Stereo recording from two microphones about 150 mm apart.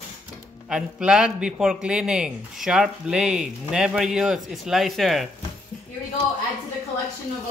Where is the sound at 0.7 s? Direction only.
5° right (ahead or behind).